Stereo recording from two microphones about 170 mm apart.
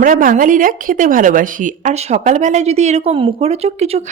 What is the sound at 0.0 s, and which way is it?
Speech, 55° right (ahead or behind).